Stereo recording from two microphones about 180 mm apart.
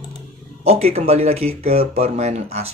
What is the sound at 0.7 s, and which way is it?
Speech, 35° right (ahead or behind).